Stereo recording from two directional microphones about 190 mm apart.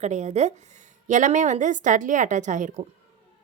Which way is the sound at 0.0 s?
35° right (ahead or behind).